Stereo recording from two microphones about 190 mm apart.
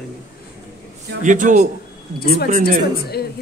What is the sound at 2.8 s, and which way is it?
Speech, 55° left (ahead or behind).